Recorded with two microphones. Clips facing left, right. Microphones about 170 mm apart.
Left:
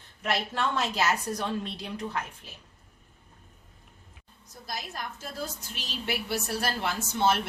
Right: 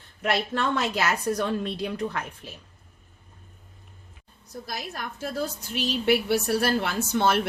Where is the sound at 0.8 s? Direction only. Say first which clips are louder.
Right 2 dB; 60° right (ahead or behind).